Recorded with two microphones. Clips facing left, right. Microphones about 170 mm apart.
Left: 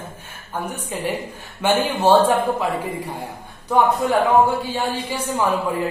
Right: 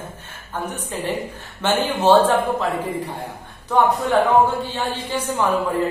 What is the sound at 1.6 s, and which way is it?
A woman's voice, 10° left (ahead or behind).